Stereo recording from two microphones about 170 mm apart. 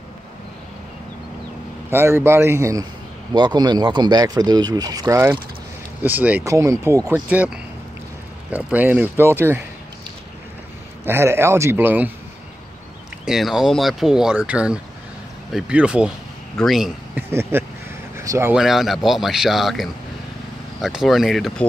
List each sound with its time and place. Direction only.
1.9 s speech: 15° right (ahead or behind)
5.0 s speech: 10° right (ahead or behind)
11.1 s speech: 15° right (ahead or behind)
13.2 s speech: 5° right (ahead or behind)
17.3 s speech: 15° right (ahead or behind)
18.1 s vehicle: 15° right (ahead or behind)
18.5 s speech: centre (ahead or behind)